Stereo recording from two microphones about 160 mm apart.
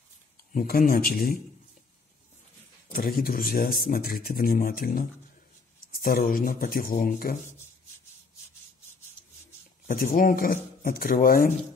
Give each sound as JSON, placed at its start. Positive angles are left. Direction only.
{"t": 0.5, "sound": "speech", "side_deg": 60}
{"t": 2.9, "sound": "speech", "side_deg": 65}
{"t": 9.8, "sound": "speech", "side_deg": 60}